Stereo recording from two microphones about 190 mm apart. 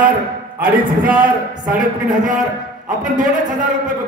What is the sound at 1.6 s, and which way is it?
Speech, 45° right (ahead or behind).